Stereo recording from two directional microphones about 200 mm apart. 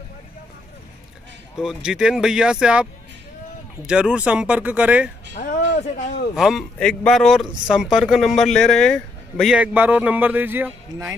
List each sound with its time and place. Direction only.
1.6 s a man's voice: 5° right (ahead or behind)
5.3 s a sound: 40° left (ahead or behind)
6.3 s a man's voice: centre (ahead or behind)